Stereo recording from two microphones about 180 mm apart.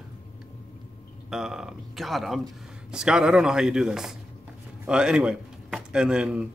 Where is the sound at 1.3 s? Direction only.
5° right (ahead or behind).